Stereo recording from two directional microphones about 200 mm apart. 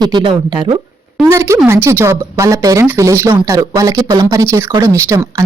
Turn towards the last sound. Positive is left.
turn(degrees=-15)  # may be behind; listen again after turning